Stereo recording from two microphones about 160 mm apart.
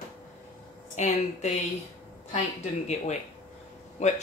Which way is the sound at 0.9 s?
45° left (ahead or behind).